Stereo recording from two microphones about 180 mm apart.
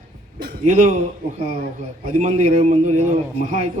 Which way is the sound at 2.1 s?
40° right (ahead or behind).